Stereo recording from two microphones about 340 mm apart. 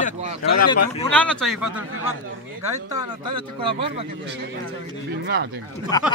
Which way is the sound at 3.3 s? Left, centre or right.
Centre.